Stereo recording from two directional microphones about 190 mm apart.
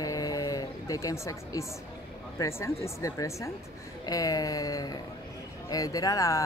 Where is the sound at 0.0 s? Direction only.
20° left (ahead or behind).